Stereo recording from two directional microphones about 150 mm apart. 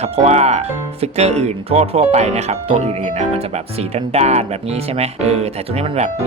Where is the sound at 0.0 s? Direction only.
45° right (ahead or behind).